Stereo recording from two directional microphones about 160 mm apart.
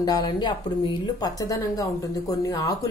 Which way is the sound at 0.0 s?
25° left (ahead or behind).